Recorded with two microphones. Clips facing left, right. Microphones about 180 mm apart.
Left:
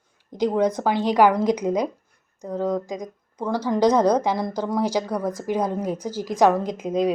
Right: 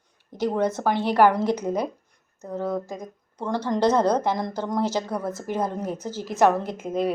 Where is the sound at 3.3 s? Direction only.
10° left (ahead or behind).